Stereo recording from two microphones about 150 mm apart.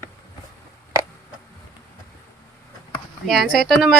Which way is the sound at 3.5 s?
Centre (ahead or behind).